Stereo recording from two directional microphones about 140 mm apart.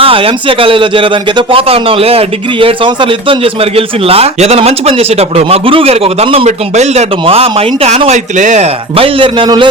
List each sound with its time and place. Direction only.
0.0 s a man's voice: 40° right (ahead or behind)